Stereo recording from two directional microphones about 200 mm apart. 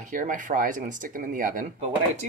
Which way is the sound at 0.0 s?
40° right (ahead or behind).